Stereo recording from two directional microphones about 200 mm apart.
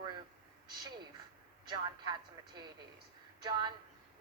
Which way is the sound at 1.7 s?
20° right (ahead or behind).